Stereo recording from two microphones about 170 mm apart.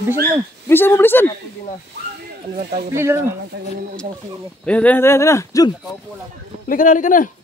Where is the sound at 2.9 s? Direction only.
15° right (ahead or behind).